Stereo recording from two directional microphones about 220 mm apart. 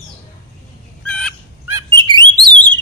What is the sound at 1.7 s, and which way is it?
Bird, 20° right (ahead or behind).